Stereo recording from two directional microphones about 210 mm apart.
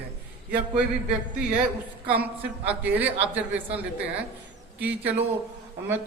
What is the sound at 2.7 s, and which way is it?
A man's voice, 5° right (ahead or behind).